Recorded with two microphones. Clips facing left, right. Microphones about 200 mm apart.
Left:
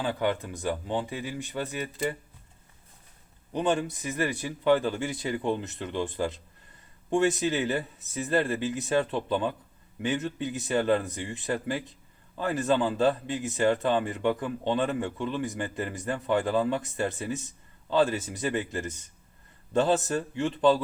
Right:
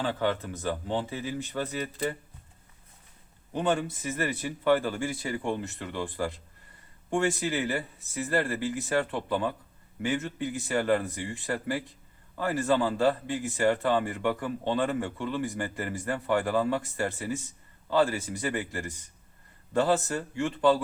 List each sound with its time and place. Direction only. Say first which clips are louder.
0.0 s speech: even; 15° left (ahead or behind)
3.5 s a man's voice: left 1 dB; 15° left (ahead or behind)